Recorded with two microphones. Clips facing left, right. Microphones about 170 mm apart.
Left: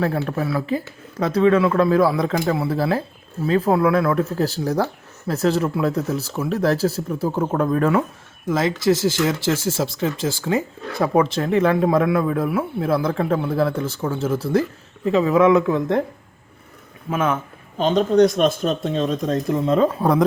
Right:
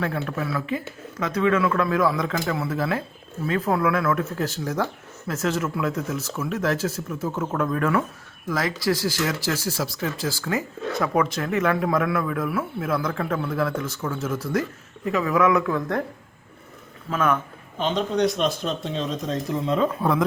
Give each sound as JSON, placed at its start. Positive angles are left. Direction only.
{"t": 0.0, "sound": "speech", "side_deg": 35}
{"t": 17.1, "sound": "speech", "side_deg": 25}
{"t": 17.7, "sound": "speech", "side_deg": 40}